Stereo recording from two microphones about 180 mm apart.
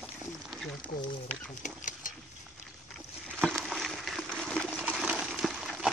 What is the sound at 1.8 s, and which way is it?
Stir, 45° left (ahead or behind).